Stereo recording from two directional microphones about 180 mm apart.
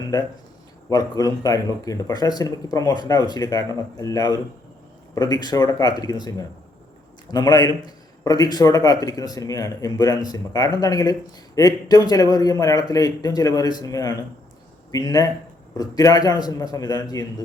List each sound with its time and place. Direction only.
0.9 s speech: 20° left (ahead or behind)